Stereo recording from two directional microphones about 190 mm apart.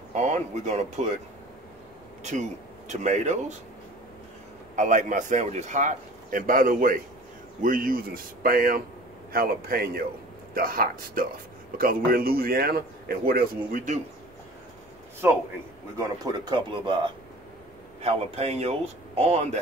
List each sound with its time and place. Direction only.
0.1 s a man's voice: 40° right (ahead or behind)
2.3 s a man's voice: 35° right (ahead or behind)
4.7 s a man's voice: 40° right (ahead or behind)
15.2 s a man's voice: 10° right (ahead or behind); by 19.6 s 35° right (ahead or behind)